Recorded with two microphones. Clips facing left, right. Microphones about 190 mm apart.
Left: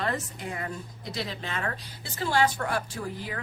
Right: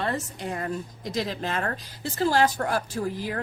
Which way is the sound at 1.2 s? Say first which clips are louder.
Right 5 dB; 45° right (ahead or behind).